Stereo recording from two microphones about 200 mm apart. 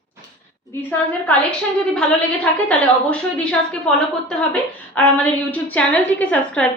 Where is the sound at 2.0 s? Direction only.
5° left (ahead or behind).